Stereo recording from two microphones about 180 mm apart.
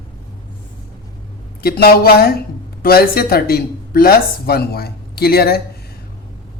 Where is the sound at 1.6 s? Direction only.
60° left (ahead or behind).